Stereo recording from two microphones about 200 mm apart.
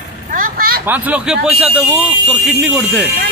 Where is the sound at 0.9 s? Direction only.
5° right (ahead or behind).